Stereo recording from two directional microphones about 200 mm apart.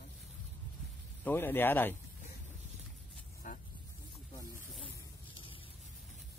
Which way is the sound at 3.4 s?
40° left (ahead or behind).